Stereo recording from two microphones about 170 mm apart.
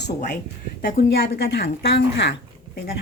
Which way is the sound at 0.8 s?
70° left (ahead or behind).